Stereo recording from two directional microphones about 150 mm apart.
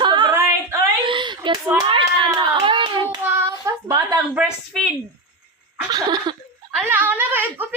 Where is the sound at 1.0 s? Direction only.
35° right (ahead or behind).